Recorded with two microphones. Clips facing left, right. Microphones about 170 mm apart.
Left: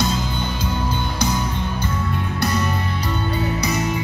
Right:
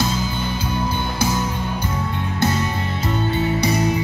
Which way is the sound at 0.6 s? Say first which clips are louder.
Right 1 dB; 10° right (ahead or behind).